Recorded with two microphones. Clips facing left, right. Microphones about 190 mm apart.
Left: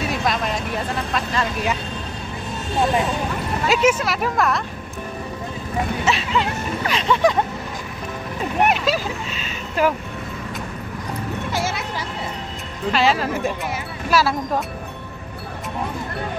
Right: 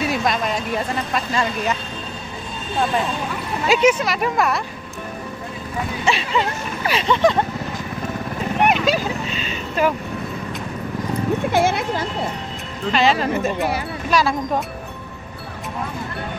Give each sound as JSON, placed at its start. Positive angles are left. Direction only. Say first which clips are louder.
{"t": 0.1, "sound": "a sound", "louder": "right 1 dB", "side_deg": 0}
{"t": 1.1, "sound": "speech", "louder": "right 2 dB", "side_deg": -5}
{"t": 3.6, "sound": "speech", "louder": "right 2 dB", "side_deg": 0}
{"t": 6.0, "sound": "speech", "louder": "right 4 dB", "side_deg": 0}
{"t": 8.6, "sound": "speech", "louder": "right 4 dB", "side_deg": 5}
{"t": 11.5, "sound": "speech", "louder": "right 6 dB", "side_deg": -55}
{"t": 12.9, "sound": "speech", "louder": "right 2 dB", "side_deg": 5}